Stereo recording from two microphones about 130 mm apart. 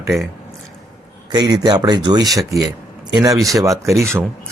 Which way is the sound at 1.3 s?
30° right (ahead or behind).